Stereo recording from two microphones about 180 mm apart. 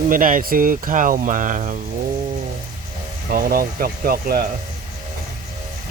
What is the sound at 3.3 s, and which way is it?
Speech, 55° right (ahead or behind).